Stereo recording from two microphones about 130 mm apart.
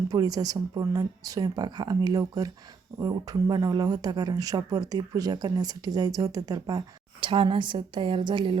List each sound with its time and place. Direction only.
0.1 s speech: 30° right (ahead or behind)